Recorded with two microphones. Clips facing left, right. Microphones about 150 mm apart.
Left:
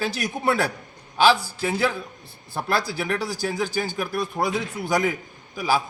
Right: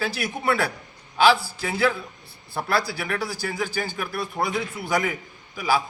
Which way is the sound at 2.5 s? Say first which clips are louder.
Even; 15° left (ahead or behind).